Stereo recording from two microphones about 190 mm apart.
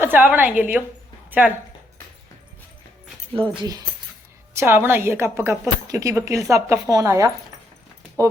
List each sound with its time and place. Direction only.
0.0 s a woman's voice: 10° right (ahead or behind)
3.6 s a woman's voice: 20° right (ahead or behind)